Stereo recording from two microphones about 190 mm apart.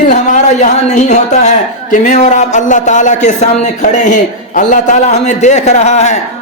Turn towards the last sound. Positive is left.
turn(degrees=35)  # may be behind; listen again after turning